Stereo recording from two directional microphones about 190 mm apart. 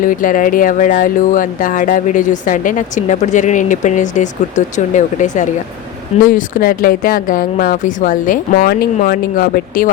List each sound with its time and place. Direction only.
0.0 s speech: 45° left (ahead or behind)